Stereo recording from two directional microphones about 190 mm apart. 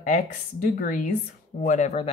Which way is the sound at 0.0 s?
40° left (ahead or behind).